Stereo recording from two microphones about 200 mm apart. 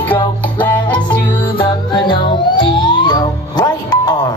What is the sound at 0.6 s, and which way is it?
Music, 25° left (ahead or behind).